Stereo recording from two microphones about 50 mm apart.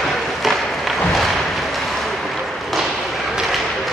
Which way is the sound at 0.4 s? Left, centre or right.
Centre.